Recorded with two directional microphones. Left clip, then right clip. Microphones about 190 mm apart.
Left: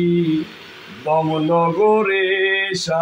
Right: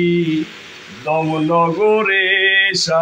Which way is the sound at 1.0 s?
10° right (ahead or behind).